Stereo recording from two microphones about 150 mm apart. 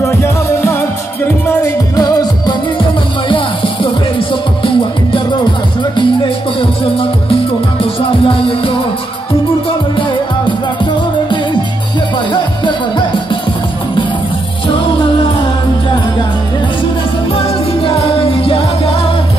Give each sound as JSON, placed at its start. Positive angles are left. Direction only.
{"t": 0.0, "sound": "music", "side_deg": 15}
{"t": 3.3, "sound": "music", "side_deg": 35}
{"t": 9.9, "sound": "music", "side_deg": 30}
{"t": 17.3, "sound": "music", "side_deg": 40}